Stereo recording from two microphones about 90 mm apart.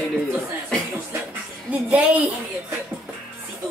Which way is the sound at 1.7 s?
15° right (ahead or behind).